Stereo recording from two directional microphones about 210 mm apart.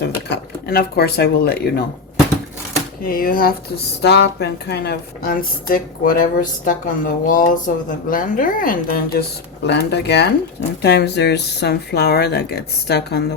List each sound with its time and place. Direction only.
0.0 s speech: 50° left (ahead or behind)
3.0 s a woman's voice: 40° left (ahead or behind)
9.6 s a woman's voice: 55° left (ahead or behind)